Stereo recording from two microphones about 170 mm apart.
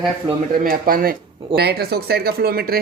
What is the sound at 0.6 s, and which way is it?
Speech, 55° right (ahead or behind).